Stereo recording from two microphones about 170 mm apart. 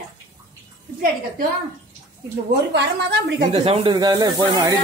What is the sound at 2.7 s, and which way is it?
Speech, 90° right.